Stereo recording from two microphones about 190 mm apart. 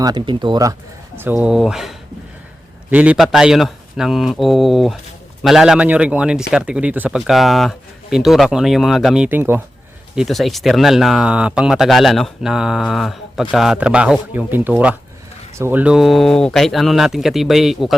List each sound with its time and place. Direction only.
0.0 s speech: 25° right (ahead or behind); by 17.9 s centre (ahead or behind)